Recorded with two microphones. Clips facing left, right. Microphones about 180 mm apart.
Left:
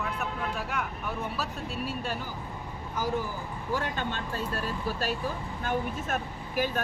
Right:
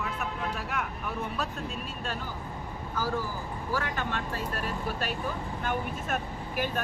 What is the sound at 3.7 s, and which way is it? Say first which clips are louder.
Speech: left 1 dB; 25° left (ahead or behind).